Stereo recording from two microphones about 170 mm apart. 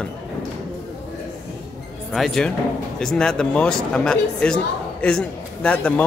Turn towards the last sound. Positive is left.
turn(degrees=10)  # may be behind; listen again after turning